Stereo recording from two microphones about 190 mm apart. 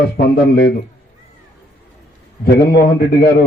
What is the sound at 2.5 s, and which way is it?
Speech, 55° left (ahead or behind).